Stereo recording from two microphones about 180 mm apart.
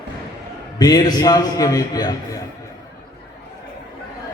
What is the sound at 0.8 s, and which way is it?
A man's voice, 20° left (ahead or behind).